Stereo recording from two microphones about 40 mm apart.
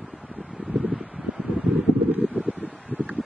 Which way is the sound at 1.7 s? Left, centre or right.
Right.